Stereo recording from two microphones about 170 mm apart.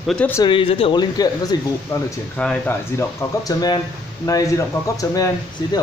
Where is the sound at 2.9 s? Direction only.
20° left (ahead or behind).